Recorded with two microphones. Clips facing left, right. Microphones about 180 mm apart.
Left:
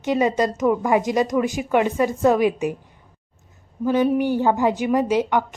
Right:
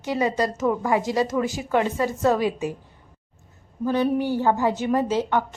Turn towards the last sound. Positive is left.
turn(degrees=15)  # may be behind; listen again after turning